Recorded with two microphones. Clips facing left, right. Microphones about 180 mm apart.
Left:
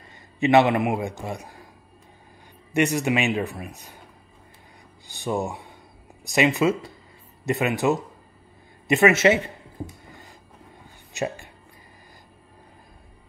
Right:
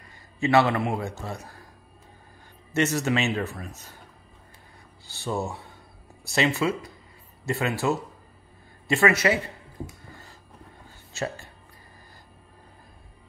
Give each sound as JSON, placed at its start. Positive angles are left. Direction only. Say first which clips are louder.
{"t": 0.4, "sound": "a man's voice", "louder": "left 3 dB", "side_deg": 20}
{"t": 2.7, "sound": "a man's voice", "louder": "left 2 dB", "side_deg": 15}
{"t": 5.0, "sound": "a man's voice", "louder": "left 3 dB", "side_deg": 15}
{"t": 11.1, "sound": "speech", "louder": "left 3 dB", "side_deg": 15}